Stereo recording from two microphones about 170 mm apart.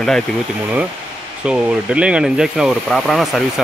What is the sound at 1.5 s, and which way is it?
Speech, 5° right (ahead or behind).